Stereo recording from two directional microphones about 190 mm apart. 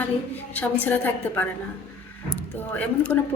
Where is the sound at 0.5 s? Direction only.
10° left (ahead or behind).